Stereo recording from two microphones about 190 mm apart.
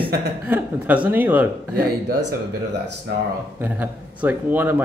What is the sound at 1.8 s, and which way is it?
Speech, 50° right (ahead or behind).